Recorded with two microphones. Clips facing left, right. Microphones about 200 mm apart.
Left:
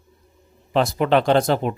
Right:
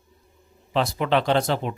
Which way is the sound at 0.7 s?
50° left (ahead or behind).